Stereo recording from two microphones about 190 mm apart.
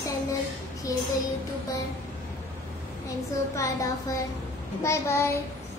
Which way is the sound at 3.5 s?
15° left (ahead or behind).